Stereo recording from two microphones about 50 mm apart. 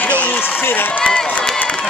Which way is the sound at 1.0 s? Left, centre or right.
Left.